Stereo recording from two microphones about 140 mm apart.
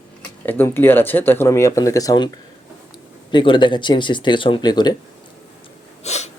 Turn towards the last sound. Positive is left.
turn(degrees=50)  # may be behind; listen again after turning